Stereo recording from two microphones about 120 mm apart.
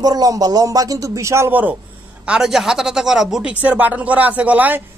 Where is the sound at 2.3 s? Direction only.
5° right (ahead or behind).